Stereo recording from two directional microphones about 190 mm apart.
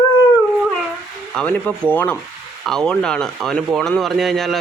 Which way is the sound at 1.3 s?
10° left (ahead or behind).